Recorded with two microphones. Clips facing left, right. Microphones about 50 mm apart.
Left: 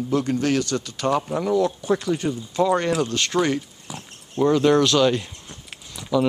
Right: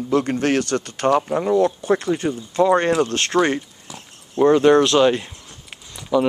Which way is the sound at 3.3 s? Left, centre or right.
Right.